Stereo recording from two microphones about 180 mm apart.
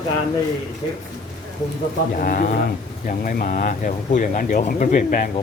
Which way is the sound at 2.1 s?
50° left (ahead or behind).